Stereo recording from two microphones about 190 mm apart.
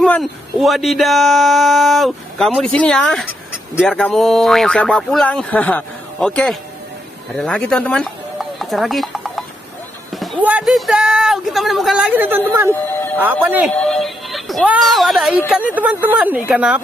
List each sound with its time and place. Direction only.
0.0 s speech: centre (ahead or behind)
13.7 s speech: 5° left (ahead or behind)